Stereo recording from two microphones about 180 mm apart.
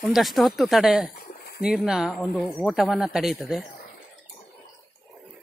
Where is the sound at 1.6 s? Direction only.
5° right (ahead or behind).